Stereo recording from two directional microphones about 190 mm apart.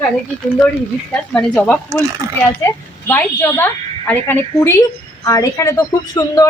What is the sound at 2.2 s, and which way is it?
Speech, 15° right (ahead or behind).